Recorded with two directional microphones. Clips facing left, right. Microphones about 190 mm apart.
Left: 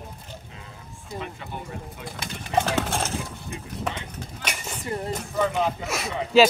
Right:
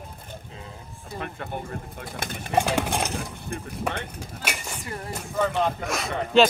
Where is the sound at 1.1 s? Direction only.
55° right (ahead or behind).